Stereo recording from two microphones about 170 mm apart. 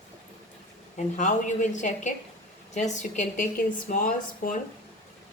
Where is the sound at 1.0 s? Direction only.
45° left (ahead or behind).